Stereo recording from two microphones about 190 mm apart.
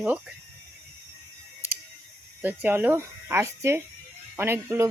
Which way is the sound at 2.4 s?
10° right (ahead or behind).